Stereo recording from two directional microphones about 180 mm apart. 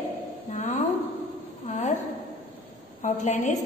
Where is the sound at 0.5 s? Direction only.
40° left (ahead or behind).